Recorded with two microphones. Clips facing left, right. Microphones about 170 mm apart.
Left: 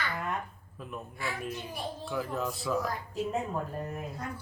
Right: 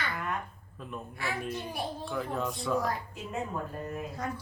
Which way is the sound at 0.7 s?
5° left (ahead or behind).